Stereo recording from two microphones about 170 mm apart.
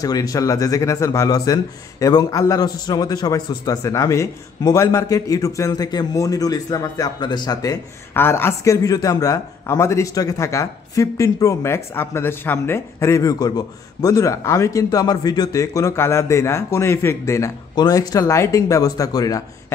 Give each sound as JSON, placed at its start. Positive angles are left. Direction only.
{"t": 0.0, "sound": "speech", "side_deg": 20}